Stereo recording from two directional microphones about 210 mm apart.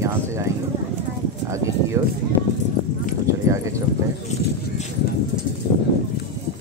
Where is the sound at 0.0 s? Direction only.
15° right (ahead or behind).